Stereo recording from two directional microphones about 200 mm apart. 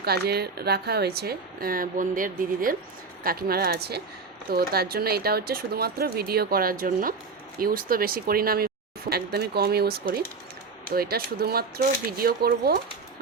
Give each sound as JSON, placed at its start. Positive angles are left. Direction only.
{"t": 0.0, "sound": "a woman's voice", "side_deg": -50}